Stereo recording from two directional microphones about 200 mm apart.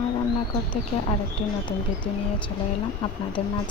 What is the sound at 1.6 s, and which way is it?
Speech, 25° left (ahead or behind).